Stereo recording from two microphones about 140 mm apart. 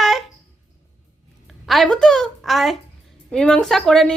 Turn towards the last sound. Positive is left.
turn(degrees=5)  # may be behind; listen again after turning